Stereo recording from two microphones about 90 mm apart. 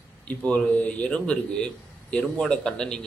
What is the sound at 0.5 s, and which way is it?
A man's voice, 15° left (ahead or behind).